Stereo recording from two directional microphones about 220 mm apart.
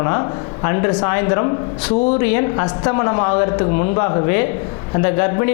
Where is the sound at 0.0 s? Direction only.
20° left (ahead or behind).